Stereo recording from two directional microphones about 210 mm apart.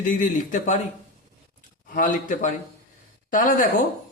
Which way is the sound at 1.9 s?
40° left (ahead or behind).